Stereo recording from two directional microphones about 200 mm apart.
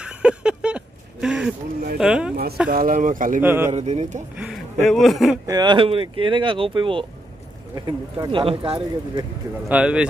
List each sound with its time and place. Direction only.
0.0 s a sound: 5° right (ahead or behind)
2.0 s speech: 5° right (ahead or behind)
2.7 s speech: 45° right (ahead or behind)
3.4 s speech: 10° right (ahead or behind)
3.7 s speech: 35° right (ahead or behind)
4.4 s a sound: centre (ahead or behind)
4.8 s speech: centre (ahead or behind)
5.5 s speech: 20° right (ahead or behind)
9.7 s speech: 5° right (ahead or behind)